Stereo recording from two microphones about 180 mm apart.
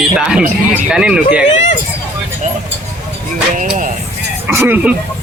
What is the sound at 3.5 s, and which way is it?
Speech, 45° right (ahead or behind).